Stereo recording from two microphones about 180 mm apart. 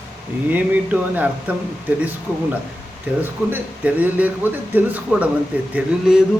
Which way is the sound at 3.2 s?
10° right (ahead or behind).